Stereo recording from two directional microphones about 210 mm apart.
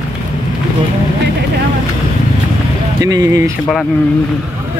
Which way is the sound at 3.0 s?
15° right (ahead or behind).